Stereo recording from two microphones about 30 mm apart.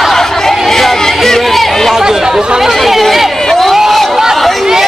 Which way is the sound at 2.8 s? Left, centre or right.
Centre.